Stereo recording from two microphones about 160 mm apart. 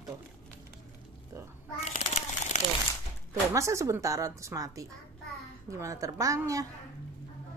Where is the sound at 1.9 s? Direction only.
40° left (ahead or behind).